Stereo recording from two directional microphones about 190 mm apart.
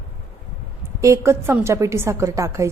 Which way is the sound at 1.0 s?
15° right (ahead or behind).